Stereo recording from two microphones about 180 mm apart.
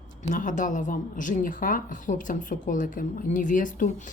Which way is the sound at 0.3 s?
45° left (ahead or behind).